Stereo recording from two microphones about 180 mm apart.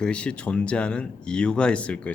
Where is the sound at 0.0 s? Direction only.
5° left (ahead or behind).